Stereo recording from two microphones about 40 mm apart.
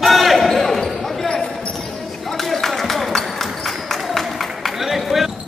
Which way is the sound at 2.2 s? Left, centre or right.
Centre.